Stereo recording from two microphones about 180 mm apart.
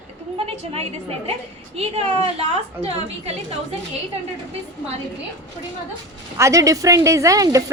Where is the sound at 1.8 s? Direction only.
35° right (ahead or behind).